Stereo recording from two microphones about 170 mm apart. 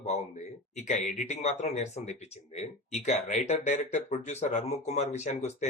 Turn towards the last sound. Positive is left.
turn(degrees=40)  # may be behind; listen again after turning